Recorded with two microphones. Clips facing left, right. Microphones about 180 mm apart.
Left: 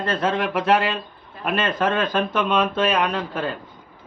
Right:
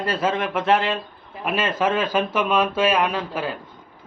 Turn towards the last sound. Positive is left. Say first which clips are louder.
# even
turn(degrees=-5)  # may be behind; listen again after turning